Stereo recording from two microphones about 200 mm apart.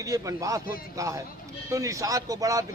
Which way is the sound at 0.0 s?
15° right (ahead or behind).